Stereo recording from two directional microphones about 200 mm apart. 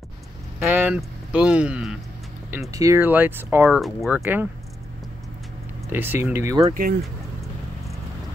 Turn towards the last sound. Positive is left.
turn(degrees=-45)  # may be behind; listen again after turning